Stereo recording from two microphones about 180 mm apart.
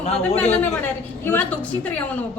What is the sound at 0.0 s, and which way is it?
Speech, 35° left (ahead or behind).